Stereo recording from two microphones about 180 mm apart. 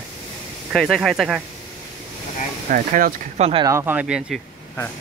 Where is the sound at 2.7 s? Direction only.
50° right (ahead or behind).